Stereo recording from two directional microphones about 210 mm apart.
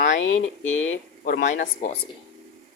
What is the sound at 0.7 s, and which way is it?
Speech, 70° left (ahead or behind).